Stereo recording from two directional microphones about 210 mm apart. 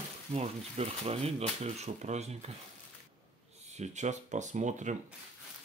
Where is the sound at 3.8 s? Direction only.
35° right (ahead or behind).